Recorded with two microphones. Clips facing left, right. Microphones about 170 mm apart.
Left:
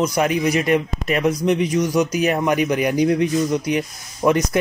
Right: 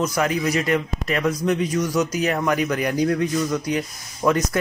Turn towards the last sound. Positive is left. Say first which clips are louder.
# left 3 dB
turn(degrees=20)  # may be behind; listen again after turning